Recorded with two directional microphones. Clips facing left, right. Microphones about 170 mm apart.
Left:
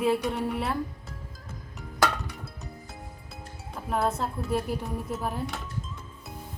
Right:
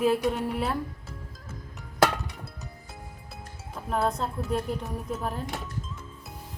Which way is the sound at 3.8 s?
Centre (ahead or behind).